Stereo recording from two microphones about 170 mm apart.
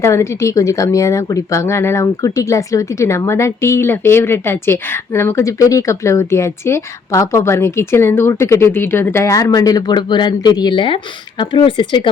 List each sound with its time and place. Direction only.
0.0 s speech: 15° left (ahead or behind)